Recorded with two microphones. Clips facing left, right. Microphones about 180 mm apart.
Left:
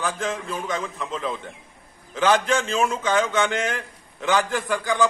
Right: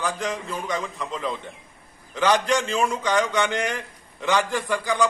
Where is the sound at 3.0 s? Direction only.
5° left (ahead or behind).